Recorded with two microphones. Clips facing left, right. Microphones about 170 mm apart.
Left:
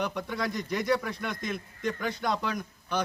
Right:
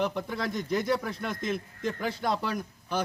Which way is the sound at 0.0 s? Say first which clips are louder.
Right 1 dB; centre (ahead or behind).